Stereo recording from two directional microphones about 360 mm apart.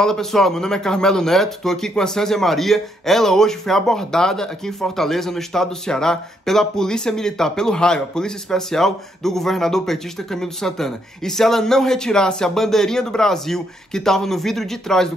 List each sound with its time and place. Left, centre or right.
0.0 s speech: centre